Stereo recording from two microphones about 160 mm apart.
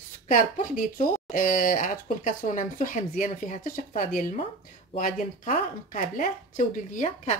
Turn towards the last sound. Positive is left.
turn(degrees=45)  # may be behind; listen again after turning